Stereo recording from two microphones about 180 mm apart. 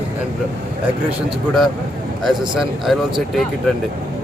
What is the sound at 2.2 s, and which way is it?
Speech, centre (ahead or behind).